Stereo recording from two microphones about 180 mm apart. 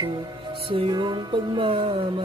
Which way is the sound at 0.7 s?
25° right (ahead or behind).